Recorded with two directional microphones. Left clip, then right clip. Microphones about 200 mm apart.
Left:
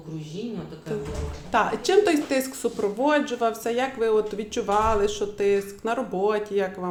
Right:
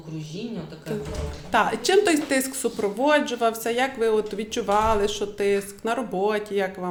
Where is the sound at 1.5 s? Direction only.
5° right (ahead or behind).